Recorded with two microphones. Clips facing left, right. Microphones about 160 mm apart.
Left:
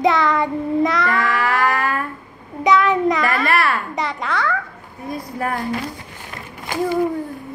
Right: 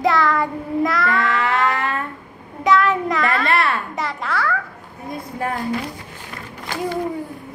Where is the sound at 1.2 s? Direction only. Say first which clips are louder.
Even; 25° right (ahead or behind).